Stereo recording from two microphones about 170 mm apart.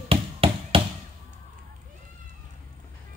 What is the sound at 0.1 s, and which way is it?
Chop, 35° right (ahead or behind).